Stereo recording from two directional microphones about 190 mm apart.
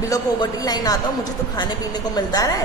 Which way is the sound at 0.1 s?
20° left (ahead or behind).